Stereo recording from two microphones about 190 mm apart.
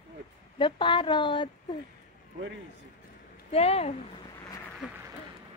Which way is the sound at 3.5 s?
30° left (ahead or behind).